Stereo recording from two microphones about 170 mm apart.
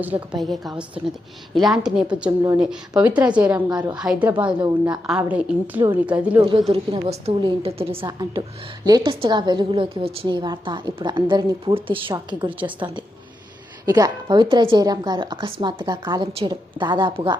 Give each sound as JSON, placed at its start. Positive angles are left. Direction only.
{"t": 0.0, "sound": "a woman's voice", "side_deg": -10}
{"t": 6.4, "sound": "a woman's voice", "side_deg": -30}